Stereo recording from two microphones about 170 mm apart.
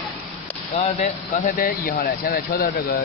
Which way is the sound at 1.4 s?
55° left (ahead or behind).